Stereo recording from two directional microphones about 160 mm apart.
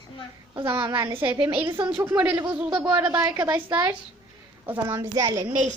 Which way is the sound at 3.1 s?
25° right (ahead or behind).